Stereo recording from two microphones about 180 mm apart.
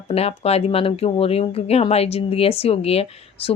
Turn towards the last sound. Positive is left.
turn(degrees=35)  # may be behind; listen again after turning